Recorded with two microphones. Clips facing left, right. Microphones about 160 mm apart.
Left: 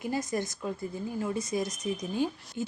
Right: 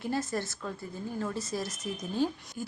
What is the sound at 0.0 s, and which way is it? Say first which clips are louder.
Speech: left 1 dB; 15° left (ahead or behind).